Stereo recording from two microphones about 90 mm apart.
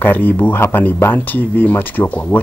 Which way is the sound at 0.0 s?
20° left (ahead or behind).